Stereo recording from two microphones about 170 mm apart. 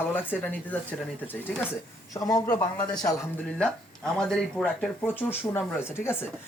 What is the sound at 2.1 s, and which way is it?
Speech, 20° left (ahead or behind).